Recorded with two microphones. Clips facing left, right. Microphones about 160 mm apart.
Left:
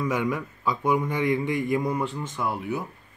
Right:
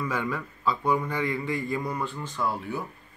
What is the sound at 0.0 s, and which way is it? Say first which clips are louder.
A man's voice: left 4 dB; 15° left (ahead or behind).